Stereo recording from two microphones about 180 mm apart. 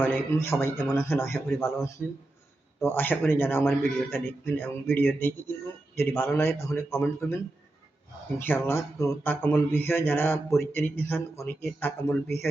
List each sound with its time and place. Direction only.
0.0 s a man's voice: 15° left (ahead or behind)
8.4 s speech: 10° left (ahead or behind)